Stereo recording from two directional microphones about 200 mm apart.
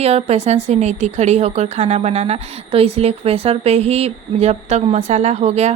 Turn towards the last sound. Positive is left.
turn(degrees=-35)  # may be behind; listen again after turning